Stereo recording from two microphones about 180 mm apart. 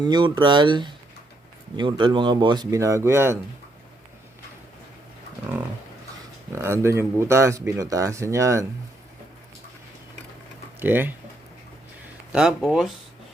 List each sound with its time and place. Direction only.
0.0 s speech: 25° right (ahead or behind)
6.5 s speech: 15° right (ahead or behind)
10.8 s speech: 10° right (ahead or behind)
12.3 s speech: 5° right (ahead or behind)